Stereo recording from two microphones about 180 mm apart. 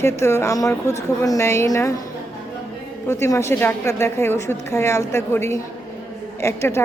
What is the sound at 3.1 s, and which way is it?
A woman's voice, 15° left (ahead or behind).